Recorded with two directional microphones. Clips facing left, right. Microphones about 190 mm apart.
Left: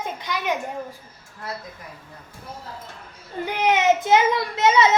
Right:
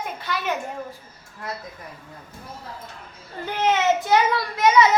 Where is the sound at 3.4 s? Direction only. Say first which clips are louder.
Left 1 dB; 15° left (ahead or behind).